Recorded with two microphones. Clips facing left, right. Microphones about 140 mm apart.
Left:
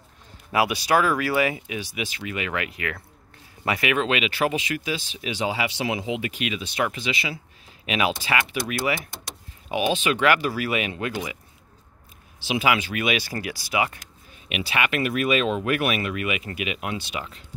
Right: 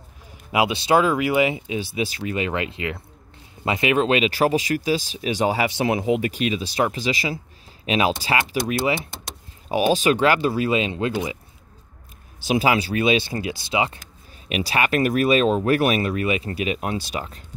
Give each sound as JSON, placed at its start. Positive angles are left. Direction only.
{"t": 0.5, "sound": "speech", "side_deg": -20}
{"t": 9.7, "sound": "speech", "side_deg": -40}
{"t": 12.4, "sound": "speech", "side_deg": -35}
{"t": 14.5, "sound": "speech", "side_deg": -35}